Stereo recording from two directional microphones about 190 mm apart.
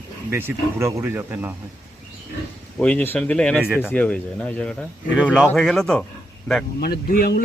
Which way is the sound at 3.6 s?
5° right (ahead or behind).